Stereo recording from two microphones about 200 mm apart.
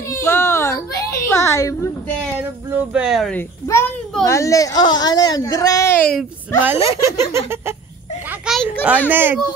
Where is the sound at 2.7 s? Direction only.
5° right (ahead or behind).